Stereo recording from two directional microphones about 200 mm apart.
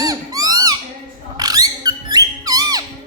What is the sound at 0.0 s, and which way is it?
Owl, 20° right (ahead or behind).